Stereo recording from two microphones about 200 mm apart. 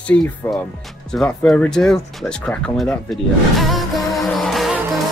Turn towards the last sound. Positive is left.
turn(degrees=0)  # may be behind; listen again after turning